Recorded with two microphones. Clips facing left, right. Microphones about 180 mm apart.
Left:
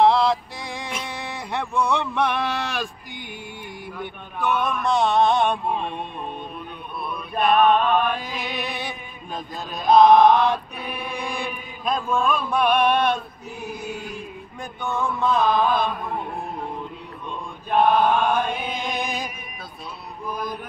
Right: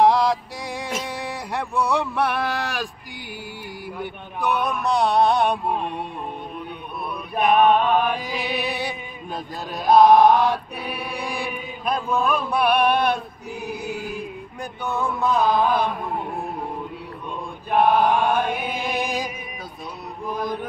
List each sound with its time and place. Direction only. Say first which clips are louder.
0.0 s music: even; 15° right (ahead or behind)
1.0 s a sound: right 2 dB; 10° right (ahead or behind)
4.0 s chant: right 1 dB; 15° right (ahead or behind)
7.3 s music: right 1 dB; 15° right (ahead or behind)
9.8 s chant: even; 10° right (ahead or behind)
14.6 s chant: even; 5° right (ahead or behind)
17.6 s chant: even; 10° right (ahead or behind)
20.2 s music: right 3 dB; 20° right (ahead or behind)